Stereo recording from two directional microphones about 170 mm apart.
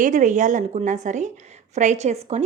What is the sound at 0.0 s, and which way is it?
A woman's voice, 45° right (ahead or behind).